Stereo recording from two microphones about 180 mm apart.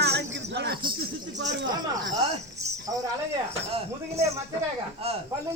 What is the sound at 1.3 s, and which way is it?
Speech, 85° right.